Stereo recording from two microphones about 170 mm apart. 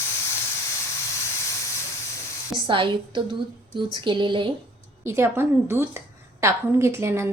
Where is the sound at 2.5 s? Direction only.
30° right (ahead or behind).